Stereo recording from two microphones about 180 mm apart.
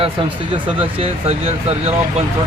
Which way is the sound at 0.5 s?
30° right (ahead or behind).